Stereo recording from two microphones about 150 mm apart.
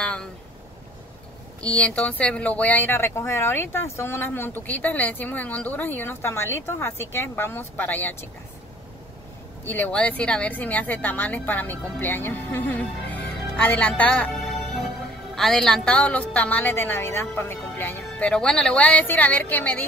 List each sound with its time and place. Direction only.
0.0 s a sound: 5° left (ahead or behind)
1.6 s speech: 5° left (ahead or behind)
9.7 s speech: 10° left (ahead or behind)